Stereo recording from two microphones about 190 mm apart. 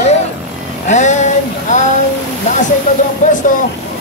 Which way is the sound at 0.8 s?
40° left (ahead or behind).